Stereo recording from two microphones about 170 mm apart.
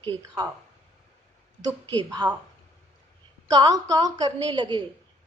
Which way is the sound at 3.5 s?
20° right (ahead or behind).